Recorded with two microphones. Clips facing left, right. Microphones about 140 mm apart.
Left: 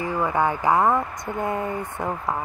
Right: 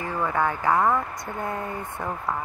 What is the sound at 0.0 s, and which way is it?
A woman's voice, 15° left (ahead or behind).